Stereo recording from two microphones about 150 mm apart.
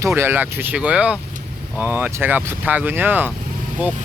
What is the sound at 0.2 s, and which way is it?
Speech, 15° right (ahead or behind).